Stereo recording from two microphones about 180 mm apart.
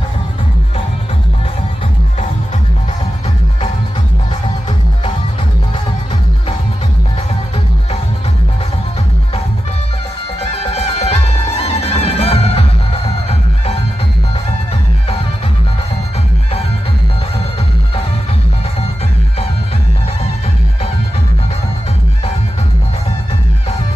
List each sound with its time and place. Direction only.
10.4 s music: 35° left (ahead or behind)